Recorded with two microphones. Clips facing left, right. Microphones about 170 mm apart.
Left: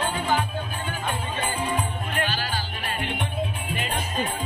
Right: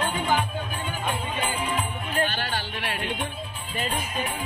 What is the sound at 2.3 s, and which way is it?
Music, 60° right (ahead or behind).